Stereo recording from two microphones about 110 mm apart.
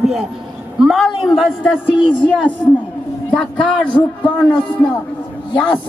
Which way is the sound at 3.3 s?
10° left (ahead or behind).